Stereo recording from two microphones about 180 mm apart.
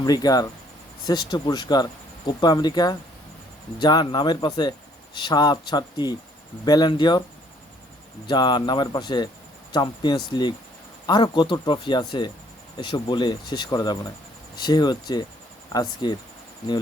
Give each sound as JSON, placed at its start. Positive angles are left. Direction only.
{"t": 0.0, "sound": "speech", "side_deg": 20}
{"t": 8.3, "sound": "speech", "side_deg": 25}